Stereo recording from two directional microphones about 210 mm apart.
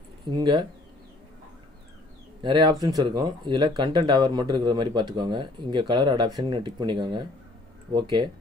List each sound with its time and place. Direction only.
0.2 s speech: 20° right (ahead or behind)
2.4 s speech: 20° right (ahead or behind)